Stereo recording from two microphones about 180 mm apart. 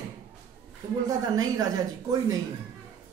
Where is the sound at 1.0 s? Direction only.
20° right (ahead or behind).